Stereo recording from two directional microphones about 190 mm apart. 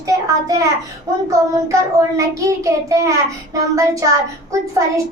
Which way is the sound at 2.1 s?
15° right (ahead or behind).